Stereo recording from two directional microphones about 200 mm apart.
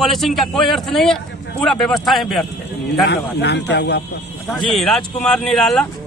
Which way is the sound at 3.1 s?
60° left (ahead or behind).